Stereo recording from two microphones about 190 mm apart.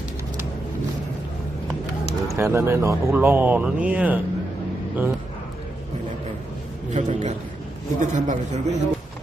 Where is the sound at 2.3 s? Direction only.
15° right (ahead or behind).